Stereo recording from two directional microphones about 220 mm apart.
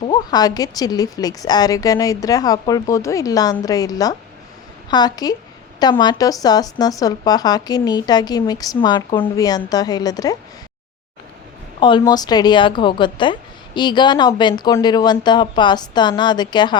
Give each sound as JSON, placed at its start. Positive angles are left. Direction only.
{"t": 0.1, "sound": "speech", "side_deg": 20}
{"t": 11.8, "sound": "a woman's voice", "side_deg": 20}